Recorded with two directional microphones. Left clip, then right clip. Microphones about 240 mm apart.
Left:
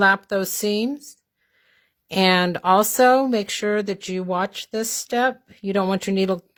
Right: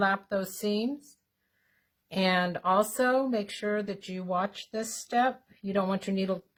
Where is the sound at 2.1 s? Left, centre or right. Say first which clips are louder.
Left 9 dB; left.